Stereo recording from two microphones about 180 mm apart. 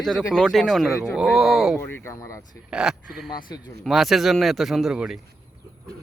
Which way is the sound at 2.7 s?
5° right (ahead or behind).